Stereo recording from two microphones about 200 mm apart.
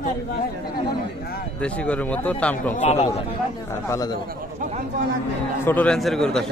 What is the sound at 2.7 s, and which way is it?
Speech, 35° left (ahead or behind).